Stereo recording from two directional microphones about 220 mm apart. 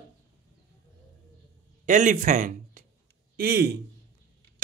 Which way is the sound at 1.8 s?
35° right (ahead or behind).